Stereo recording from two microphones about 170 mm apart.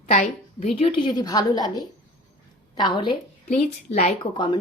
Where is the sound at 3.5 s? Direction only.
40° left (ahead or behind).